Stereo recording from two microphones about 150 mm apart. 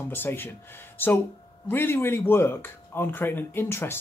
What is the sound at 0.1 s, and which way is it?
Speech, 15° left (ahead or behind).